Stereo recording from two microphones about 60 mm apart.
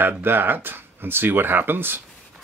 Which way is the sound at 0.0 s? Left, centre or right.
Right.